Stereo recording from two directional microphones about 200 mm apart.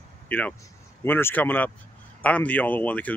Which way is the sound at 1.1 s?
10° left (ahead or behind).